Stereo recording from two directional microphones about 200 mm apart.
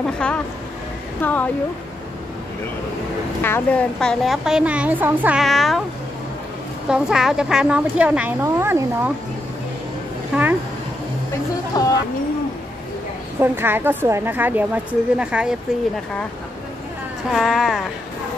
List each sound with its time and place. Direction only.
0.0 s a woman's voice: 5° left (ahead or behind)
3.4 s a woman's voice: 10° left (ahead or behind)
6.9 s a woman's voice: centre (ahead or behind)
11.7 s speech: 20° left (ahead or behind)
13.4 s a woman's voice: 10° right (ahead or behind)
17.3 s a woman's voice: centre (ahead or behind)